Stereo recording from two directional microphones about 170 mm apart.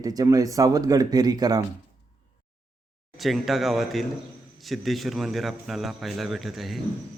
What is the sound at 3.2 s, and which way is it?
A man's voice, centre (ahead or behind).